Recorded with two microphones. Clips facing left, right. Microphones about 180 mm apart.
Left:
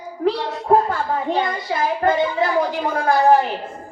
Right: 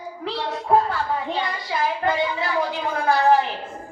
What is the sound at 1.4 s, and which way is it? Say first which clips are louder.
A woman's voice: left 4 dB; 45° left (ahead or behind).